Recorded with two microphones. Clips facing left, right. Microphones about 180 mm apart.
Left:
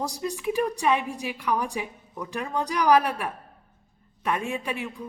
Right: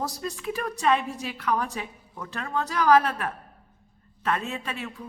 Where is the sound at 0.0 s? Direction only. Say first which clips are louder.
Left 3 dB; 15° left (ahead or behind).